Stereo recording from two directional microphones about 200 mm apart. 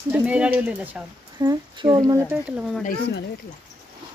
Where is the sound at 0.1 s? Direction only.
5° right (ahead or behind).